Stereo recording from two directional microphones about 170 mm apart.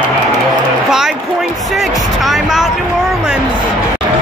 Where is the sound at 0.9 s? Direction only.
Centre (ahead or behind).